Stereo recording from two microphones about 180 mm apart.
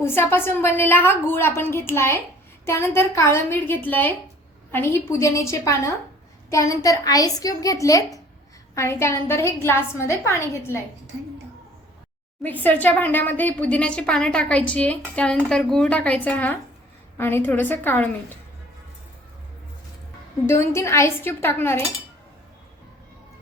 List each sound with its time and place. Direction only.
0.0 s a woman's voice: 10° left (ahead or behind)
12.4 s a woman's voice: 10° left (ahead or behind)
20.5 s a woman's voice: 15° left (ahead or behind)